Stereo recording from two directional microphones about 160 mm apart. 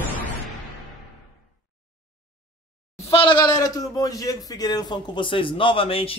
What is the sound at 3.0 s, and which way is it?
A man's voice, 35° left (ahead or behind).